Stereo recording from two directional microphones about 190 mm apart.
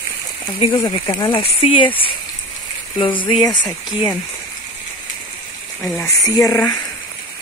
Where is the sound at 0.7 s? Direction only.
25° left (ahead or behind).